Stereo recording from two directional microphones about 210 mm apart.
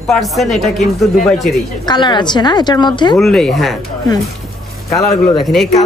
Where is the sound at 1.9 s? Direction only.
20° left (ahead or behind).